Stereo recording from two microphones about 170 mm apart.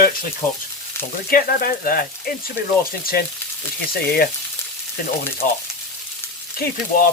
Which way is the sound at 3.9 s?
65° left (ahead or behind).